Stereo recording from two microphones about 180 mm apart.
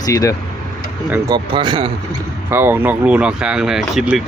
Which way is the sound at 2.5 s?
10° right (ahead or behind).